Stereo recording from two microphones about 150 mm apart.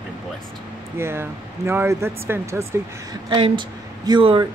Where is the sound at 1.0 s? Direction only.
15° right (ahead or behind).